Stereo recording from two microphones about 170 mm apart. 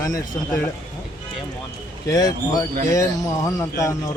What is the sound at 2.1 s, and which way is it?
Speech, 20° left (ahead or behind).